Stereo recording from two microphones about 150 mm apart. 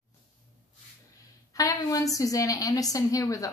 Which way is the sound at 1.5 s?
20° left (ahead or behind).